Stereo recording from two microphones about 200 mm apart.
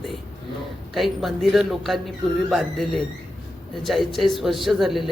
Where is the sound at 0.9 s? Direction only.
Centre (ahead or behind).